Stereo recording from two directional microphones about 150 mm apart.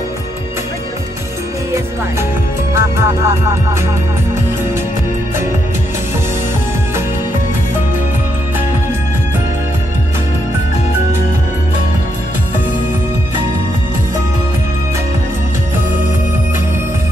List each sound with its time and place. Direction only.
2.7 s music: 20° right (ahead or behind)